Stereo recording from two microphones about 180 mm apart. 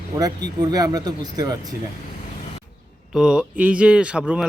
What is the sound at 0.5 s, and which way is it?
Speech, 20° right (ahead or behind).